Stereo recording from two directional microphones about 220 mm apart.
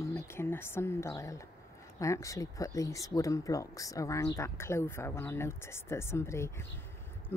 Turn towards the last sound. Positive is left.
turn(degrees=10)  # may be behind; listen again after turning